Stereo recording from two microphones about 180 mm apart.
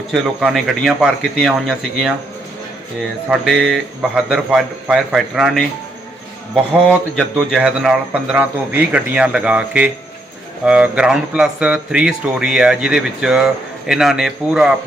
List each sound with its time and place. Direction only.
0.1 s speech: centre (ahead or behind)
3.2 s speech: 5° right (ahead or behind)